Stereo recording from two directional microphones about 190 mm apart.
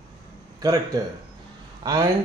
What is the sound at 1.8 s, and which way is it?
Speech, 20° right (ahead or behind).